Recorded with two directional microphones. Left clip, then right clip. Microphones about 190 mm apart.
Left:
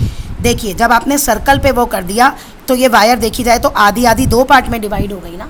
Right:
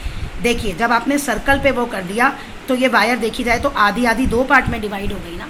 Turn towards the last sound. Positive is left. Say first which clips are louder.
# left 4 dB
turn(degrees=65)  # may be behind; listen again after turning